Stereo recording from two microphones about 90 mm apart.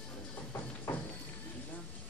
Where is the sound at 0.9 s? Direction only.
20° left (ahead or behind).